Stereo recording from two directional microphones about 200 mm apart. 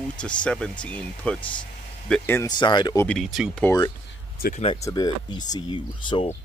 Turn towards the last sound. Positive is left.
turn(degrees=25)  # may be behind; listen again after turning